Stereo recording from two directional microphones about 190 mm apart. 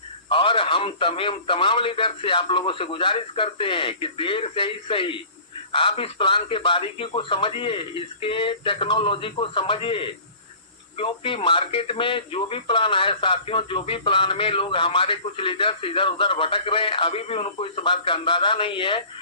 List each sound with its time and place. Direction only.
0.3 s speech: 25° left (ahead or behind)